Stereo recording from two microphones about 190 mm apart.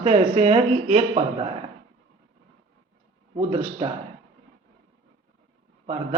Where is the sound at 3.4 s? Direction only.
30° right (ahead or behind).